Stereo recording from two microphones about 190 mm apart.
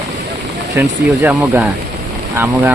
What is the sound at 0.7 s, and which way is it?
Speech, 10° right (ahead or behind).